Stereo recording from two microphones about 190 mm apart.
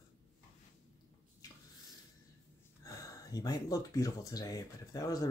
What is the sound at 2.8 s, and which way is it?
Speech, 15° left (ahead or behind).